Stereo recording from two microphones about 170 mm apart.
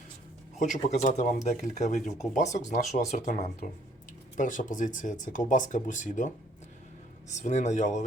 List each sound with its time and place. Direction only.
0.5 s speech: 45° left (ahead or behind)